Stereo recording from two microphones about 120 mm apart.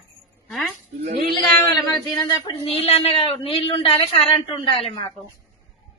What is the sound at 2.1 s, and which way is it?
Speech, 40° left (ahead or behind).